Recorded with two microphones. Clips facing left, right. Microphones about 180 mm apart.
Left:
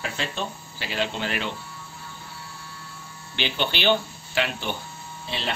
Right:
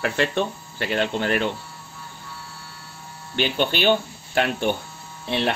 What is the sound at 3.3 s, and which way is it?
A man's voice, 45° right (ahead or behind).